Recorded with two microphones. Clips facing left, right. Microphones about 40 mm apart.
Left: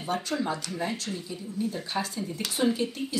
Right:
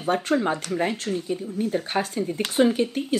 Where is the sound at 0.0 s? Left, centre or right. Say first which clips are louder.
Right 7 dB; right.